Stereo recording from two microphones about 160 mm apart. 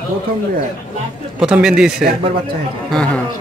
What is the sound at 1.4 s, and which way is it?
A man's voice, 5° right (ahead or behind).